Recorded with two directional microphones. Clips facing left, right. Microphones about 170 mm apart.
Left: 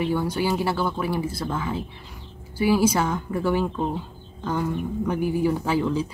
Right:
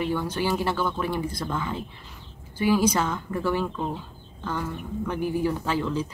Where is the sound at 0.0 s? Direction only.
10° left (ahead or behind).